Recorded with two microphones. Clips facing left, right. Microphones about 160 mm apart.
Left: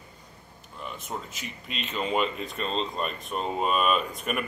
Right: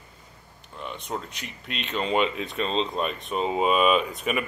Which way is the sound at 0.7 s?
5° left (ahead or behind).